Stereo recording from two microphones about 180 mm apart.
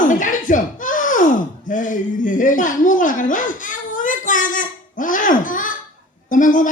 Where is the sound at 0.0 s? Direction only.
45° left (ahead or behind).